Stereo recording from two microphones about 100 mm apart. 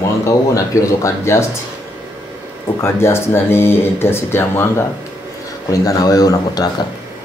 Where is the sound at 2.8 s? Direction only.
25° left (ahead or behind).